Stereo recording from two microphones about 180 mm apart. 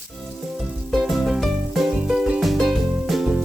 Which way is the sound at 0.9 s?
Centre (ahead or behind).